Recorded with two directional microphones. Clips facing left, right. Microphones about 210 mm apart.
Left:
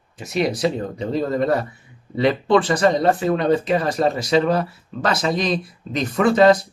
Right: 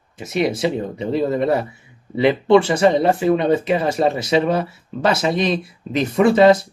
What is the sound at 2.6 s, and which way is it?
Speech, 25° right (ahead or behind).